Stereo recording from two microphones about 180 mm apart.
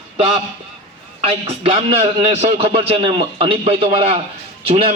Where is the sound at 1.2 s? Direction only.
30° right (ahead or behind).